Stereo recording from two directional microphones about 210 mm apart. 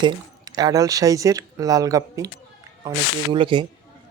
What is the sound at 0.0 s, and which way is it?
Speech, 20° right (ahead or behind).